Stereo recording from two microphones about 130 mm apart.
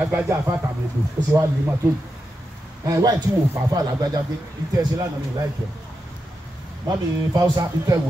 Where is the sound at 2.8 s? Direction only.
30° right (ahead or behind).